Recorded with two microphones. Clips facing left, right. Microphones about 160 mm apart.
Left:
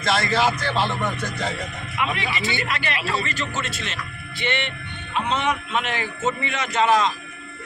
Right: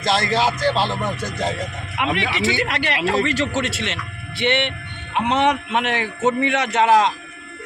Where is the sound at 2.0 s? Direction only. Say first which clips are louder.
Right 4 dB; 85° right.